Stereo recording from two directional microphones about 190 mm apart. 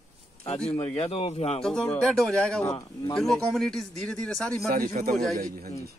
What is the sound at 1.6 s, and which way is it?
A man's voice, 5° left (ahead or behind).